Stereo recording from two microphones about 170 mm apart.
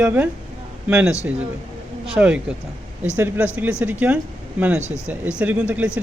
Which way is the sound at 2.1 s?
5° right (ahead or behind).